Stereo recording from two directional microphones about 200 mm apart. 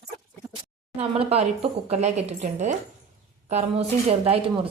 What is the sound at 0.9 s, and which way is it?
Speech, 30° right (ahead or behind).